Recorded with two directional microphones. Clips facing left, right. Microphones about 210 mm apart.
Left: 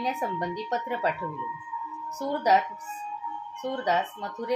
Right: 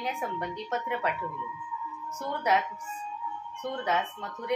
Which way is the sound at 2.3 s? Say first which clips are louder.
Left 4 dB; 35° left (ahead or behind).